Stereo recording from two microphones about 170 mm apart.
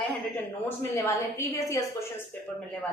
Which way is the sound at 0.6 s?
15° left (ahead or behind).